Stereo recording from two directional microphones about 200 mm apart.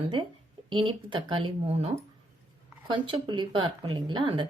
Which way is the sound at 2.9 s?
25° right (ahead or behind).